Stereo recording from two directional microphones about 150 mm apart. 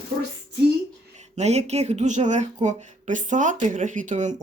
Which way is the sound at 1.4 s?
45° right (ahead or behind).